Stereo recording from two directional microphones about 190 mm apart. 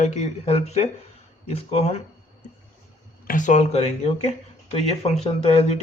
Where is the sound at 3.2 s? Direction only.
40° left (ahead or behind).